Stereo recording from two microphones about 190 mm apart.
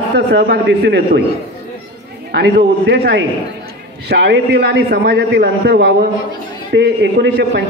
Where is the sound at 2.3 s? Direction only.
60° right (ahead or behind).